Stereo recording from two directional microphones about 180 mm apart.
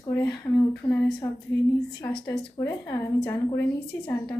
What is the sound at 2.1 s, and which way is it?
Speech, 30° left (ahead or behind).